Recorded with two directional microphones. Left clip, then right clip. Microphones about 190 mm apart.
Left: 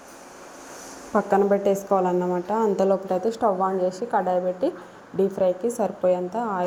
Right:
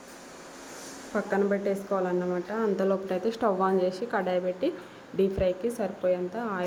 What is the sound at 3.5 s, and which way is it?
Speech, 10° right (ahead or behind).